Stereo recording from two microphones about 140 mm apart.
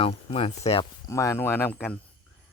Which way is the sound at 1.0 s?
20° left (ahead or behind).